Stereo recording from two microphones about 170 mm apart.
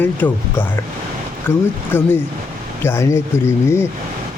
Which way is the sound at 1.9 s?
15° left (ahead or behind).